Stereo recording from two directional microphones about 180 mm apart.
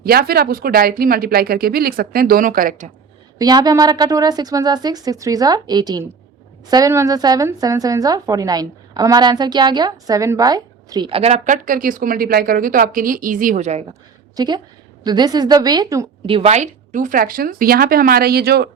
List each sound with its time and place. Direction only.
0.0 s speech: 55° right (ahead or behind)
3.3 s a woman's voice: 20° right (ahead or behind); by 13.8 s 40° right (ahead or behind)
14.3 s a woman's voice: 25° right (ahead or behind)
16.2 s a woman's voice: 30° right (ahead or behind); by 18.7 s 60° right (ahead or behind)